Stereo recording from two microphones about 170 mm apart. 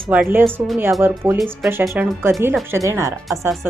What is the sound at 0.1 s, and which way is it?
A woman's voice, 10° right (ahead or behind).